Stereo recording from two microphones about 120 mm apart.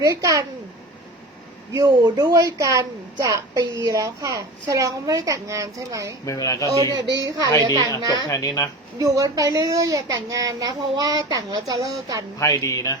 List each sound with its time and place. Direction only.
0.0 s a woman's voice: 25° right (ahead or behind)
1.9 s a woman's voice: 40° right (ahead or behind)
6.2 s speech: 30° left (ahead or behind)
7.2 s a woman's voice: 25° right (ahead or behind)
8.3 s speech: 25° left (ahead or behind)
9.0 s a woman's voice: 30° right (ahead or behind)
12.4 s speech: 25° left (ahead or behind)